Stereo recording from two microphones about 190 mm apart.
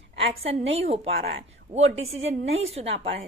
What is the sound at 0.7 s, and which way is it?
A woman's voice, 30° right (ahead or behind).